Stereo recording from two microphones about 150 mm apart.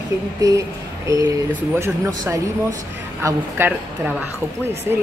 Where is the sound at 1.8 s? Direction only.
20° right (ahead or behind).